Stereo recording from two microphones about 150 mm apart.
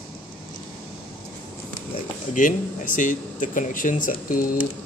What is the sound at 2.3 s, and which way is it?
Speech, 60° left (ahead or behind).